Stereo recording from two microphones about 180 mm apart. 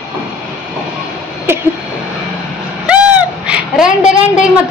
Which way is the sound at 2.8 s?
5° right (ahead or behind).